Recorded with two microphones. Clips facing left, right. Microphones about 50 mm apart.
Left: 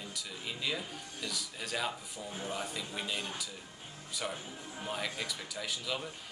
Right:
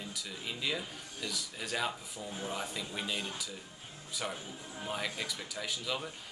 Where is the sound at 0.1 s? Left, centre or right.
Centre.